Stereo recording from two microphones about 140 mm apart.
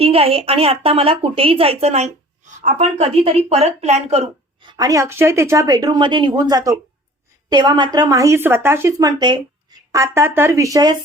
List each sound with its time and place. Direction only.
0.0 s a woman's voice: 45° right (ahead or behind)
4.6 s speech: 30° right (ahead or behind)